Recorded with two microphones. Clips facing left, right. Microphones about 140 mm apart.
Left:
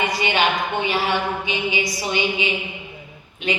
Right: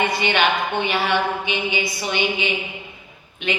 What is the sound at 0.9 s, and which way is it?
A woman's voice, 35° left (ahead or behind).